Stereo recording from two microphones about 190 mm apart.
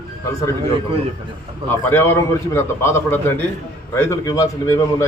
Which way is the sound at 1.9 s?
10° left (ahead or behind).